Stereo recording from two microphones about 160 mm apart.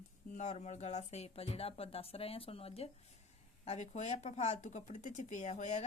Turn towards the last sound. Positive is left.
turn(degrees=45)  # may be behind; listen again after turning